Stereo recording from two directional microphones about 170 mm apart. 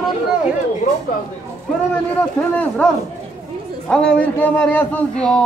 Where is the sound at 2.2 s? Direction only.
10° left (ahead or behind).